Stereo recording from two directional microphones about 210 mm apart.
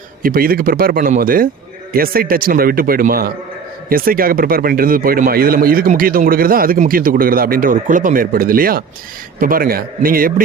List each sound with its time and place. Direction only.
0.2 s speech: 45° right (ahead or behind)